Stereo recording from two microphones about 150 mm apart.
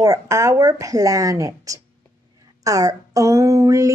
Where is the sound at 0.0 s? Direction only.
20° right (ahead or behind).